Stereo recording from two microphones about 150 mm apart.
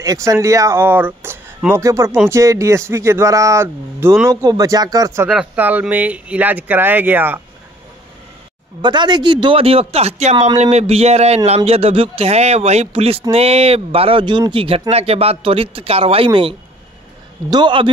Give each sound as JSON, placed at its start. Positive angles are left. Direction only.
{"t": 0.0, "sound": "speech", "side_deg": -20}
{"t": 5.3, "sound": "speech", "side_deg": -10}
{"t": 8.8, "sound": "speech", "side_deg": -30}